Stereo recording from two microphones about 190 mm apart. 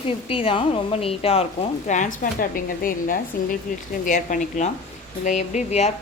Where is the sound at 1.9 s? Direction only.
45° left (ahead or behind).